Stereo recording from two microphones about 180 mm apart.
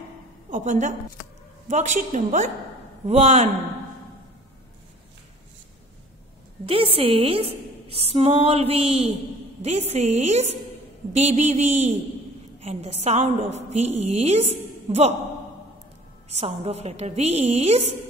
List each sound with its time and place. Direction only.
0.5 s a woman's voice: 45° right (ahead or behind)
6.6 s a woman's voice: 30° right (ahead or behind)
16.3 s a woman's voice: 35° right (ahead or behind)